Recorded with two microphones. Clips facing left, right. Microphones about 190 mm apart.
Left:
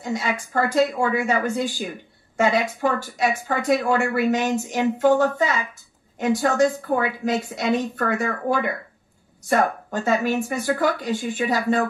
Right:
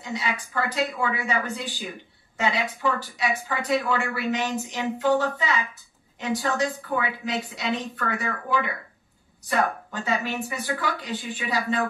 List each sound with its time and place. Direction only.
0.0 s speech: 45° left (ahead or behind)